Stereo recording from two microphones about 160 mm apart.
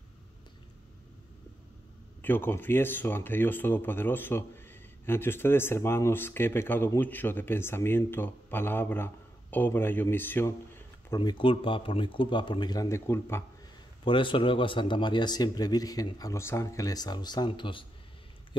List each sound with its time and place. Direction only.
2.2 s speech: 10° left (ahead or behind)
11.1 s speech: 30° left (ahead or behind)
14.0 s speech: 30° left (ahead or behind)